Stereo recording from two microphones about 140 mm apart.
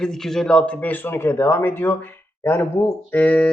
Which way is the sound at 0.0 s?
5° left (ahead or behind).